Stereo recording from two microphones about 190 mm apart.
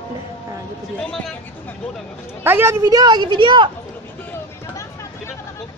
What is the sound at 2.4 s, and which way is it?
Speech, 10° right (ahead or behind).